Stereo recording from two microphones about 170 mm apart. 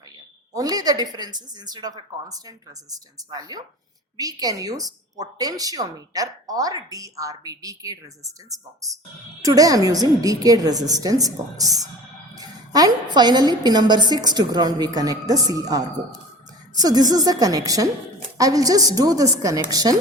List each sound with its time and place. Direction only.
0.5 s a woman's voice: 20° right (ahead or behind)